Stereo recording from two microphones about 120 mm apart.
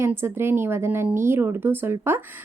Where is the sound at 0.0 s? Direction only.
20° right (ahead or behind).